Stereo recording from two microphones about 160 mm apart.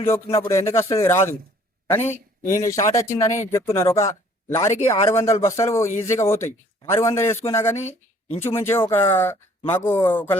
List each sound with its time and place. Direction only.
0.0 s speech: 20° left (ahead or behind)
2.6 s speech: 20° left (ahead or behind)
7.8 s a woman's voice: 45° left (ahead or behind)
8.4 s speech: 15° left (ahead or behind)